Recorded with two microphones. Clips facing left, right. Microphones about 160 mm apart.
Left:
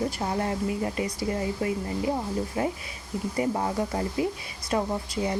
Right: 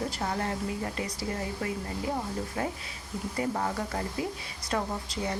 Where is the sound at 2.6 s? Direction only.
15° left (ahead or behind).